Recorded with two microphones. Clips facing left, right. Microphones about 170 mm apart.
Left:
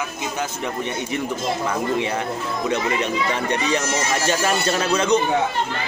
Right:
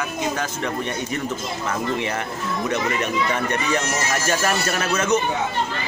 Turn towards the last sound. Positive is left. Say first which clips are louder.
# left 2 dB
turn(degrees=15)  # may be behind; listen again after turning